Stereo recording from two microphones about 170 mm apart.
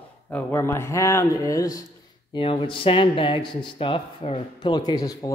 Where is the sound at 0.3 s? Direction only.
15° left (ahead or behind).